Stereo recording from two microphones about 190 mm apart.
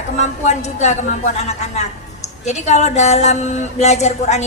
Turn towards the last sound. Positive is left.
turn(degrees=35)  # may be behind; listen again after turning